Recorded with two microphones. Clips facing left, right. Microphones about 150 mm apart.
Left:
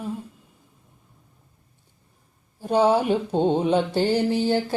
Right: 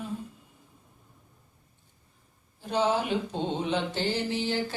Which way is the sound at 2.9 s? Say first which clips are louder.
Left 7 dB; 45° left (ahead or behind).